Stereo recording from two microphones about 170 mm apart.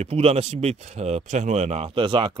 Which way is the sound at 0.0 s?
40° right (ahead or behind).